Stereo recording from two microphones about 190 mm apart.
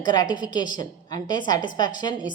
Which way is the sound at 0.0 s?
20° left (ahead or behind).